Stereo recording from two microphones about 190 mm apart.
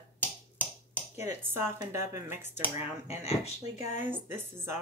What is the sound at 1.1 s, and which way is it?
Speech, 15° right (ahead or behind).